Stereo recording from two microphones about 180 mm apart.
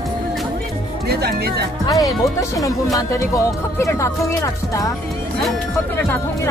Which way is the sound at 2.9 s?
20° left (ahead or behind).